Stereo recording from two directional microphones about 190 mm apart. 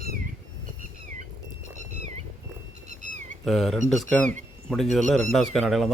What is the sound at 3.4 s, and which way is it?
Speech, centre (ahead or behind).